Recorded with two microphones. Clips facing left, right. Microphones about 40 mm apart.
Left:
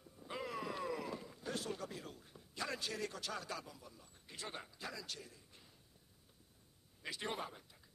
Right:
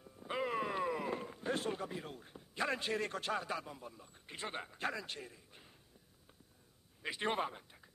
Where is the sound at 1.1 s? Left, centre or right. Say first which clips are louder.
Right 6 dB; right.